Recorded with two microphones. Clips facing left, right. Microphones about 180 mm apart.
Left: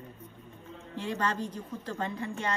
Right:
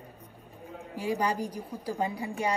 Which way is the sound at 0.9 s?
15° right (ahead or behind).